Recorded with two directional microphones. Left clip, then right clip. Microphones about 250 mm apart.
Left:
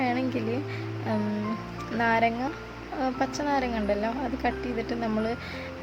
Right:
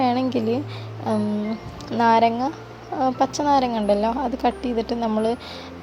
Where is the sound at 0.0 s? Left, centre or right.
Centre.